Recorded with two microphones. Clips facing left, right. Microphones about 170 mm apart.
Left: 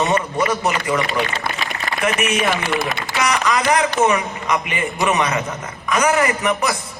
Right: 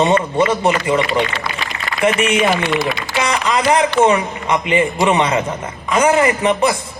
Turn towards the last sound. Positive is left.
turn(degrees=-25)  # may be behind; listen again after turning